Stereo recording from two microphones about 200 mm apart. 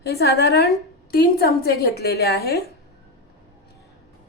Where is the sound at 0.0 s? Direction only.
55° left (ahead or behind).